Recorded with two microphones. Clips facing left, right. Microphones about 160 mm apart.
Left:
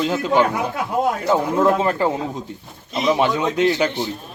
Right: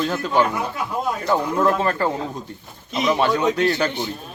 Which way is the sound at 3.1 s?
15° left (ahead or behind).